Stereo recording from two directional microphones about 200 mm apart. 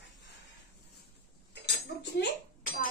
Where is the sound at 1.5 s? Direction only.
60° left (ahead or behind).